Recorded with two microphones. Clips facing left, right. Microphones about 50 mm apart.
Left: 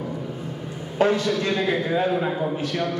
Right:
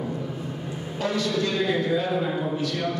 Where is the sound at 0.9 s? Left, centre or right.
Left.